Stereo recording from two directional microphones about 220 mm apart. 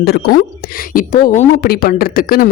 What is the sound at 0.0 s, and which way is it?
A woman's voice, 45° left (ahead or behind).